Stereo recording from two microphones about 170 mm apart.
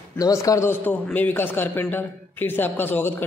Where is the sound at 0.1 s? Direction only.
20° left (ahead or behind).